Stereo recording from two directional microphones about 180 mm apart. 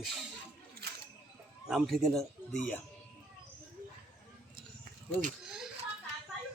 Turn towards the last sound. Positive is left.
turn(degrees=-5)  # may be behind; listen again after turning